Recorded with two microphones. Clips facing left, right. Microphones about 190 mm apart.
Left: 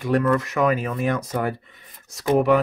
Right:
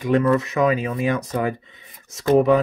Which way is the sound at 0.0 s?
20° right (ahead or behind).